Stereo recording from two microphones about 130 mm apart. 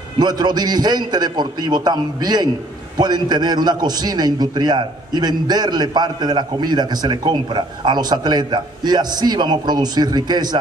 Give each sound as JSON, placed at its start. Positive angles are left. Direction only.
{"t": 0.2, "sound": "a man's voice", "side_deg": -30}